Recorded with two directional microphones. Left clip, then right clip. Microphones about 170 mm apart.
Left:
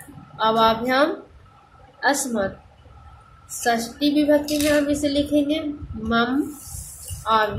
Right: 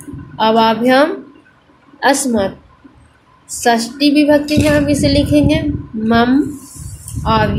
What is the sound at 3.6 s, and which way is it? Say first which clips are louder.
A woman's voice: right 8 dB; 25° right (ahead or behind).